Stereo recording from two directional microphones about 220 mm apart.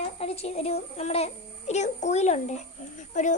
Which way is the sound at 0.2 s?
30° left (ahead or behind).